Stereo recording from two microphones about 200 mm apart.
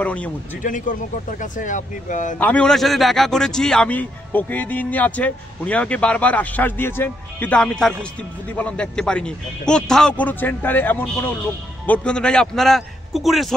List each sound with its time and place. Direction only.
0.0 s a man's voice: 5° left (ahead or behind)
0.6 s speech: 40° left (ahead or behind)
2.3 s a man's voice: 5° left (ahead or behind)